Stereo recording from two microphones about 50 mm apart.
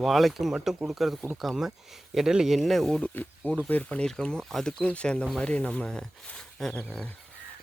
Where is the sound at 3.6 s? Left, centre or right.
Left.